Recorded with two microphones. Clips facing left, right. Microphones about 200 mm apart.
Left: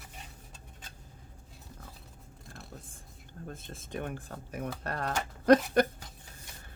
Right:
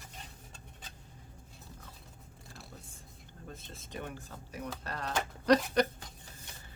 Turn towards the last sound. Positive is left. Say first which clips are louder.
# left 4 dB
turn(degrees=50)  # may be behind; listen again after turning